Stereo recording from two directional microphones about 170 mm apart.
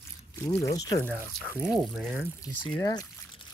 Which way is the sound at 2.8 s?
20° left (ahead or behind).